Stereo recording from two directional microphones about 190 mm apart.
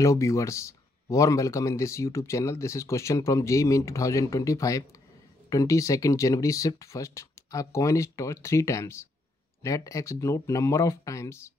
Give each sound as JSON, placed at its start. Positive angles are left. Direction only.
{"t": 0.0, "sound": "speech", "side_deg": 15}